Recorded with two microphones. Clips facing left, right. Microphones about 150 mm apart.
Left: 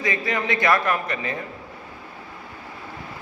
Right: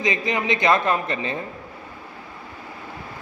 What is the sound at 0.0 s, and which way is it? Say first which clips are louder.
A man's voice: right 2 dB; 20° right (ahead or behind).